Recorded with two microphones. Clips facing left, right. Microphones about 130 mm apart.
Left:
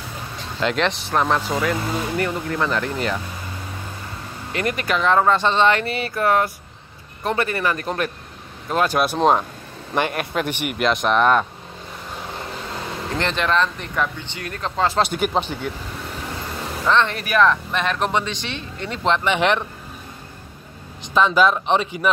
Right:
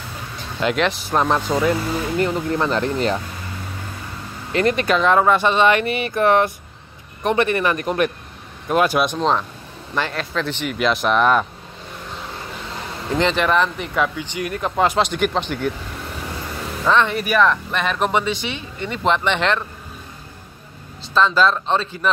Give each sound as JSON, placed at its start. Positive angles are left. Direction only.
{"t": 0.7, "sound": "speech", "side_deg": -10}
{"t": 4.6, "sound": "speech", "side_deg": -25}
{"t": 9.0, "sound": "speech", "side_deg": 10}
{"t": 10.8, "sound": "speech", "side_deg": 0}
{"t": 13.2, "sound": "speech", "side_deg": -10}
{"t": 15.0, "sound": "speech", "side_deg": 5}
{"t": 16.8, "sound": "speech", "side_deg": -10}
{"t": 19.3, "sound": "speech", "side_deg": 15}
{"t": 21.0, "sound": "speech", "side_deg": 10}